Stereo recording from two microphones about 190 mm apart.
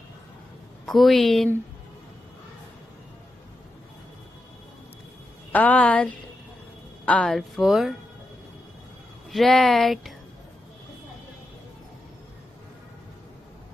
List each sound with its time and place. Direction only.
0.8 s speech: centre (ahead or behind)
5.5 s a woman's voice: 10° left (ahead or behind)
9.3 s speech: centre (ahead or behind)